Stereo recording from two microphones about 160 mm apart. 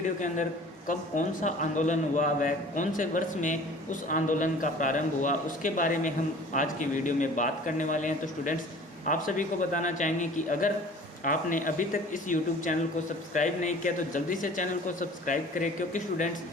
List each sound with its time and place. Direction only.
0.9 s speech: 50° left (ahead or behind)